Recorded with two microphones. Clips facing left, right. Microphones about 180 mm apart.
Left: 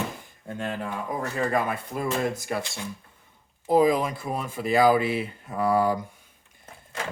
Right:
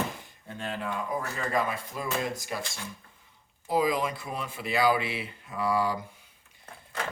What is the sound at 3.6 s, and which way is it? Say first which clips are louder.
Speech: left 6 dB; 50° left (ahead or behind).